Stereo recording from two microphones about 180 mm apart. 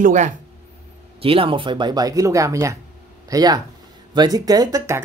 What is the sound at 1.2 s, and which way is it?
Speech, 30° right (ahead or behind).